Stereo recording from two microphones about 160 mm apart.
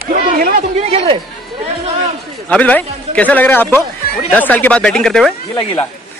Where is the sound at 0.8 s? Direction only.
40° right (ahead or behind).